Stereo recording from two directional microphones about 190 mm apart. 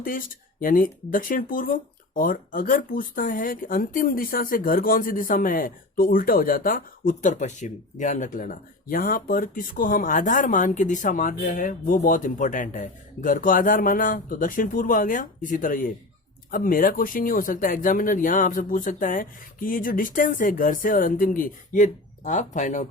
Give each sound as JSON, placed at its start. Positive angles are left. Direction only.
{"t": 0.0, "sound": "speech", "side_deg": 45}